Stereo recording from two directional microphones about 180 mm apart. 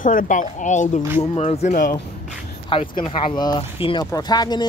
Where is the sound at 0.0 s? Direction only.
50° left (ahead or behind).